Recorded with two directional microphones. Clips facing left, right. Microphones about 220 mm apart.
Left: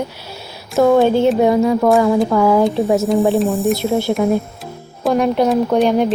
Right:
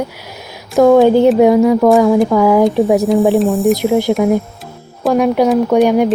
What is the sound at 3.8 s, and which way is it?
A woman's voice, 15° right (ahead or behind).